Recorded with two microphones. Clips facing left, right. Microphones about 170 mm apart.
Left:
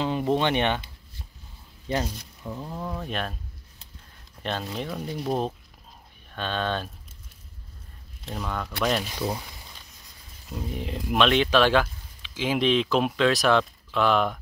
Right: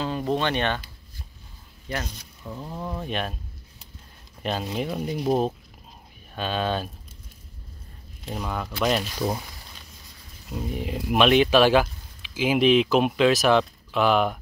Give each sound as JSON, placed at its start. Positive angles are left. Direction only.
{"t": 0.0, "sound": "speech", "side_deg": 15}
{"t": 2.0, "sound": "speech", "side_deg": 5}
{"t": 4.4, "sound": "speech", "side_deg": -5}
{"t": 8.3, "sound": "speech", "side_deg": -5}
{"t": 10.5, "sound": "speech", "side_deg": -5}